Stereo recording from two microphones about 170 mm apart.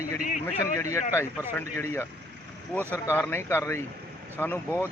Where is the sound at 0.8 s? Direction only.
15° left (ahead or behind).